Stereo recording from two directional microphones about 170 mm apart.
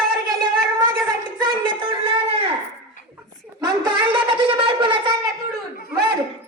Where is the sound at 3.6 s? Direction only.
30° right (ahead or behind).